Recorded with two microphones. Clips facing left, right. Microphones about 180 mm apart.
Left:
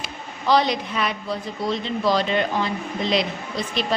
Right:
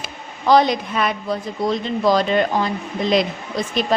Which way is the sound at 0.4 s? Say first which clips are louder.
Right 4 dB; 50° right (ahead or behind).